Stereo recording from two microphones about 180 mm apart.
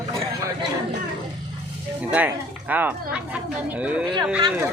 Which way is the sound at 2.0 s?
10° right (ahead or behind).